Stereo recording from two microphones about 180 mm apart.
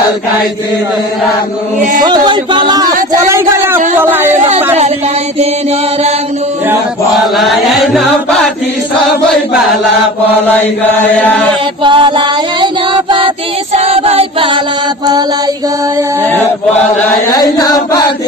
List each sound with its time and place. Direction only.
1.8 s speech: 45° right (ahead or behind)
2.0 s speech: 25° right (ahead or behind)
7.3 s chant: centre (ahead or behind)
11.8 s child singing: 25° right (ahead or behind)
13.7 s music: 35° right (ahead or behind)
17.3 s chant: 20° left (ahead or behind)